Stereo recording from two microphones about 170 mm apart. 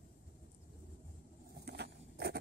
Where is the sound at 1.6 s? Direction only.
75° right (ahead or behind).